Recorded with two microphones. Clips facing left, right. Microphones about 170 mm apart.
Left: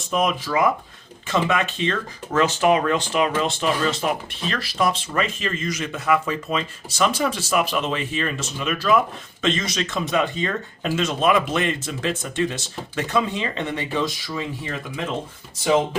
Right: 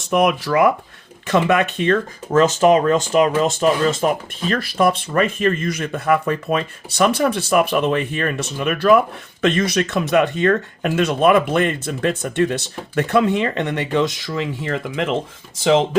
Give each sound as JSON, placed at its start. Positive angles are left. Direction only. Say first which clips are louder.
{"t": 0.0, "sound": "speech", "louder": "right 5 dB", "side_deg": -70}